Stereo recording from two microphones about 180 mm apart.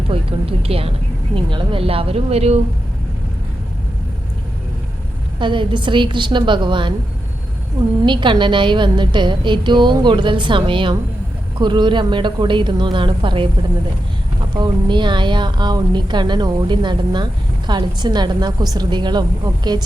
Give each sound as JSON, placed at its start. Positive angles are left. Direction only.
{"t": 0.1, "sound": "a woman's voice", "side_deg": -30}
{"t": 5.4, "sound": "a woman's voice", "side_deg": -25}
{"t": 8.0, "sound": "a woman's voice", "side_deg": -25}
{"t": 14.5, "sound": "a woman's voice", "side_deg": -25}